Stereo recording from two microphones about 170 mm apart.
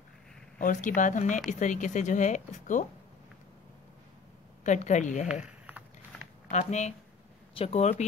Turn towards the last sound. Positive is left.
turn(degrees=40)  # may be behind; listen again after turning